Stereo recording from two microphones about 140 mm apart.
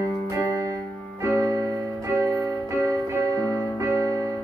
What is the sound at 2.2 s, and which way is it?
Music, 20° right (ahead or behind).